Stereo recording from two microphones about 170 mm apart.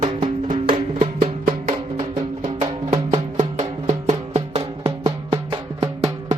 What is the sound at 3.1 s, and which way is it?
Music, 40° right (ahead or behind).